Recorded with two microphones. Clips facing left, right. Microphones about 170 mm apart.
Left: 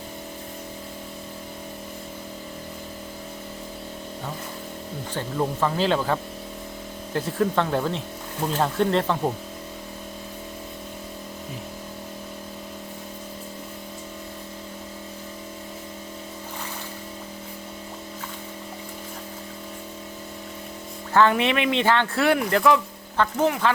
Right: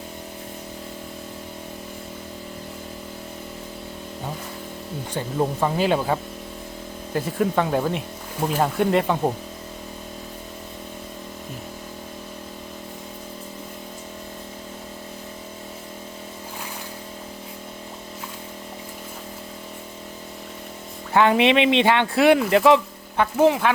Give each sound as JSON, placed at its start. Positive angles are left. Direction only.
{"t": 5.1, "sound": "speech", "side_deg": -20}
{"t": 21.1, "sound": "speech", "side_deg": -15}